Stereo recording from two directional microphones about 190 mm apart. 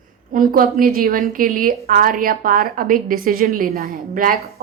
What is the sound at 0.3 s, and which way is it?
A woman's voice, 50° right (ahead or behind).